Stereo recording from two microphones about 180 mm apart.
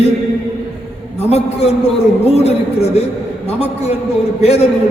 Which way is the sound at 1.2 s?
35° left (ahead or behind).